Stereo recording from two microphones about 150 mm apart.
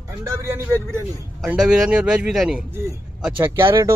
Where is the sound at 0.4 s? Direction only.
15° right (ahead or behind).